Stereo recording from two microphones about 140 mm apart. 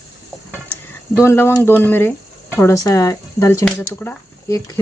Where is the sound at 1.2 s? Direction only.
20° left (ahead or behind).